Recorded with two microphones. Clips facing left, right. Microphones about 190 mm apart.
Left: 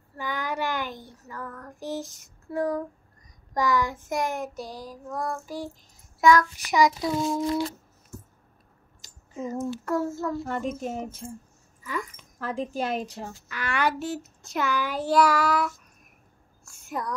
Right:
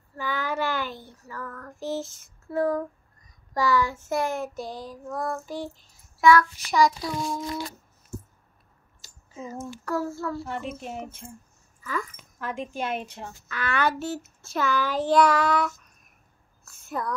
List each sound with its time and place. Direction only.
0.2 s child singing: 15° left (ahead or behind)
9.8 s a child's voice: 25° left (ahead or behind)
10.4 s speech: 45° left (ahead or behind)
11.8 s speech: 15° left (ahead or behind)
12.4 s a woman's voice: 35° left (ahead or behind)
13.5 s child singing: 15° left (ahead or behind)
16.6 s a sound: 15° left (ahead or behind)